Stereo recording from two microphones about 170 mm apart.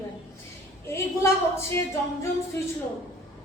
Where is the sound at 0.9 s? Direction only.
15° left (ahead or behind).